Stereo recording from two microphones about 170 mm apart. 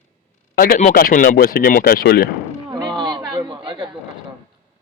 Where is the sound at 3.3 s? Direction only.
25° right (ahead or behind).